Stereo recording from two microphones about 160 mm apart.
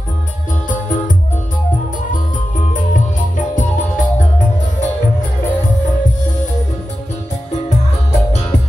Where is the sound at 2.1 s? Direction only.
55° left (ahead or behind).